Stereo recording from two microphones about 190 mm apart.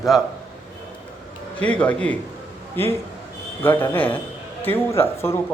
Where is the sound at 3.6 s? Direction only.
10° left (ahead or behind).